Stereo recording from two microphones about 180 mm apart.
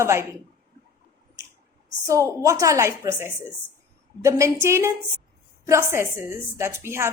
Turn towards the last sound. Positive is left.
turn(degrees=-15)  # may be behind; listen again after turning